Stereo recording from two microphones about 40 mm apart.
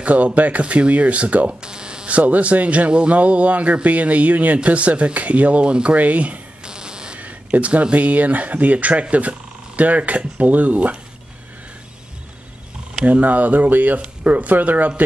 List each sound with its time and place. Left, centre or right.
0.0 s speech: right
1.5 s speech: right
2.0 s speech: right
5.9 s speech: right
6.6 s insect: right
7.2 s speech: right
13.0 s speech: right